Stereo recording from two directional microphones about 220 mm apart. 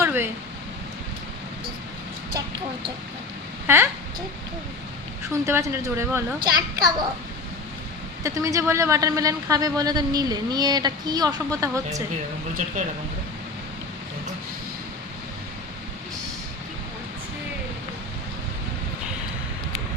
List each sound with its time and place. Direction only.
0.0 s a sound: 10° right (ahead or behind)
5.3 s a man's voice: 10° right (ahead or behind)
8.2 s a man's voice: 15° right (ahead or behind)
12.6 s speech: 35° right (ahead or behind)